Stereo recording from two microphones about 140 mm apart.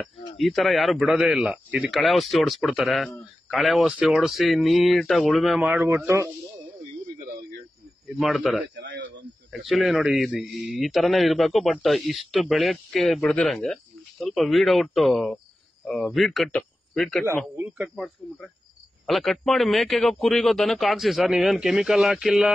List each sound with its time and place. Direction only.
0.4 s a man's voice: centre (ahead or behind)
5.9 s speech: 20° right (ahead or behind)
8.5 s a man's voice: centre (ahead or behind)
17.2 s a man's voice: 15° left (ahead or behind)
17.7 s a man's voice: 5° right (ahead or behind)